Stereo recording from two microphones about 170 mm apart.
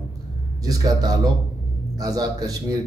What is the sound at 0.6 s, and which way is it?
A man's voice, 20° right (ahead or behind).